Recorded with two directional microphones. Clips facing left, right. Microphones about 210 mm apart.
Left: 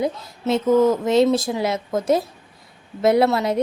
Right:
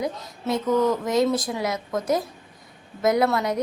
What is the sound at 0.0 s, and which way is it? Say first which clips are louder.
A woman's voice: left 5 dB; 25° left (ahead or behind).